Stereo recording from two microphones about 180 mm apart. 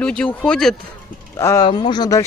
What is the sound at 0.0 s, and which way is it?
Speech, 5° left (ahead or behind).